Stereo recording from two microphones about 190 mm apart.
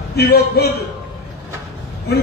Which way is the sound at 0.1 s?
55° left (ahead or behind).